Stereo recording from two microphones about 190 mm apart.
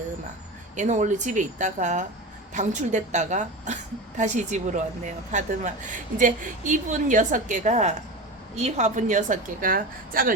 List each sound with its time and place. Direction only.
0.8 s a woman's voice: 40° right (ahead or behind)